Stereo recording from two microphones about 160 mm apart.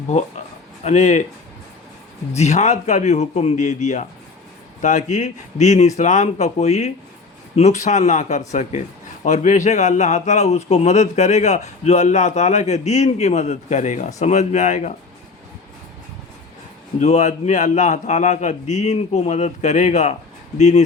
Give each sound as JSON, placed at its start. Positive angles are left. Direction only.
{"t": 0.9, "sound": "a man's voice", "side_deg": 45}
{"t": 2.3, "sound": "a man's voice", "side_deg": 45}
{"t": 17.0, "sound": "a man's voice", "side_deg": 45}